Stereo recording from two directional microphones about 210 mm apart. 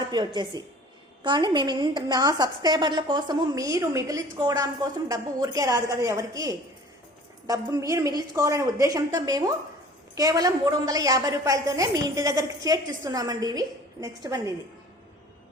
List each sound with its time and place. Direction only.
0.1 s a woman's voice: 20° right (ahead or behind)